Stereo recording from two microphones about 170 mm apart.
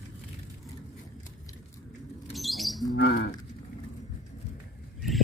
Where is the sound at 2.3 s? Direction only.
Centre (ahead or behind).